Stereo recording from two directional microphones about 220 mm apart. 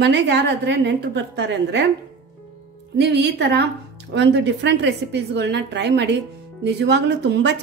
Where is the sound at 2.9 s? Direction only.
50° right (ahead or behind).